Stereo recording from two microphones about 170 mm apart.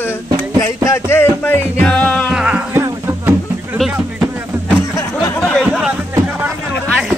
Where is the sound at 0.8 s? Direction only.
15° left (ahead or behind).